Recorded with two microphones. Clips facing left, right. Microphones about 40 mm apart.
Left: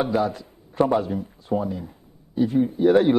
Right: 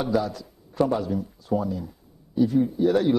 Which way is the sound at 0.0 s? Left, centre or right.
Left.